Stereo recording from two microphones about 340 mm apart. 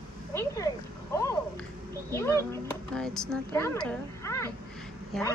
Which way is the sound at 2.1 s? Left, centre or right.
Centre.